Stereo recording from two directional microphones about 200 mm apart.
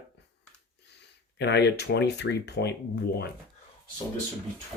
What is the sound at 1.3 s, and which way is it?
Speech, 55° left (ahead or behind).